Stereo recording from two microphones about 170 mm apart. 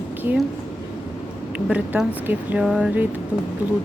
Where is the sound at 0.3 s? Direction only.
5° right (ahead or behind).